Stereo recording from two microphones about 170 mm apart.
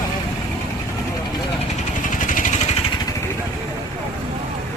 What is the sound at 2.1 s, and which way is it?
Vehicle, 50° left (ahead or behind).